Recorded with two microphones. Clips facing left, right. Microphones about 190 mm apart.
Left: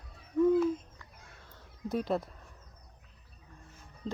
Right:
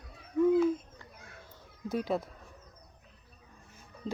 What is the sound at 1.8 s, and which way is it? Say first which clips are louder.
Speech: even; centre (ahead or behind).